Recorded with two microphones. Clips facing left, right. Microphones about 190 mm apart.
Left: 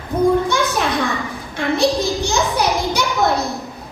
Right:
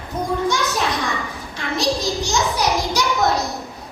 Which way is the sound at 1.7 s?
55° left (ahead or behind).